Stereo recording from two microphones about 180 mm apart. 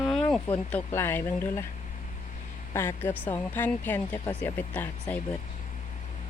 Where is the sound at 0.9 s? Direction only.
15° left (ahead or behind).